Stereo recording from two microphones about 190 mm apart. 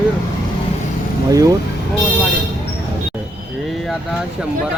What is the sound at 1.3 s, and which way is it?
Speech, 15° right (ahead or behind).